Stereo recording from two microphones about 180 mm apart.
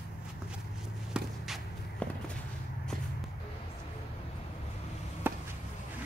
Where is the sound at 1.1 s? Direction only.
Centre (ahead or behind).